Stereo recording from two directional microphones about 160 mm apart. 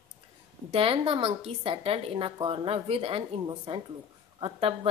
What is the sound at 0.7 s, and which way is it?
Speech, 35° right (ahead or behind).